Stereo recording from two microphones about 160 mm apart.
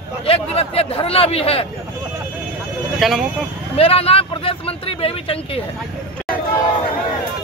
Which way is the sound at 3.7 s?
35° left (ahead or behind).